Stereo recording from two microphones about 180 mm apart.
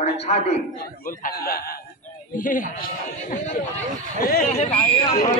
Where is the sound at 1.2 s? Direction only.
55° left (ahead or behind).